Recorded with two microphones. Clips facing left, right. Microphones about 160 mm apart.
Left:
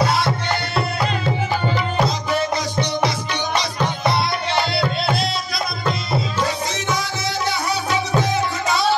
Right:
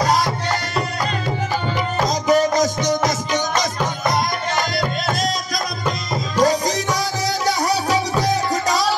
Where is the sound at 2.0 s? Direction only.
40° right (ahead or behind).